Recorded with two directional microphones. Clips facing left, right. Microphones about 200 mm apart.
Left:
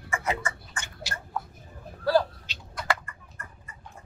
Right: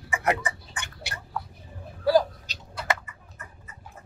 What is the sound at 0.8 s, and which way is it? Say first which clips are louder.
Biting: left 1 dB; 60° right (ahead or behind).